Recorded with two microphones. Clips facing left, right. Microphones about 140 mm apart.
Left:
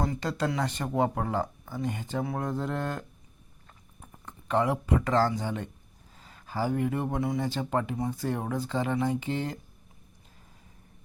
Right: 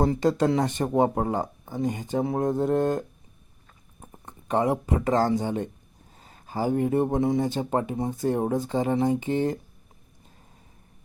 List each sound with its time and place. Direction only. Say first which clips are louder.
0.0 s speech: right 8 dB; 25° right (ahead or behind)
4.0 s speech: right 1 dB; 25° right (ahead or behind)
6.1 s a sound: right 2 dB; 25° right (ahead or behind)
7.0 s speech: right 6 dB; 25° right (ahead or behind)